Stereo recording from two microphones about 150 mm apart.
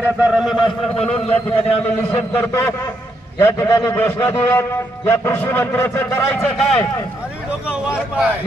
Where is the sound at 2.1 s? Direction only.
15° left (ahead or behind).